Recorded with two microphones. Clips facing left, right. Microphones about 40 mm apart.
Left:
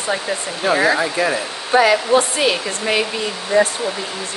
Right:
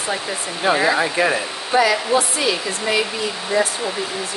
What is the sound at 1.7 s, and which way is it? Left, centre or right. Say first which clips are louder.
A woman's voice: left 3 dB; left.